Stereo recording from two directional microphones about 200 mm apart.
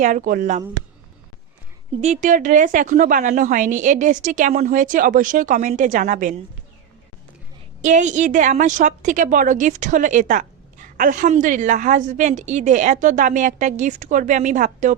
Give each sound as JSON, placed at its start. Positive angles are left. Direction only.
{"t": 0.0, "sound": "a woman's voice", "side_deg": -40}
{"t": 2.0, "sound": "a woman's voice", "side_deg": -35}
{"t": 7.8, "sound": "a woman's voice", "side_deg": -35}